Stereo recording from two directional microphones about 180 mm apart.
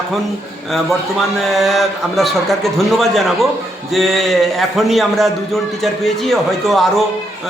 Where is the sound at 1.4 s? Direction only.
Centre (ahead or behind).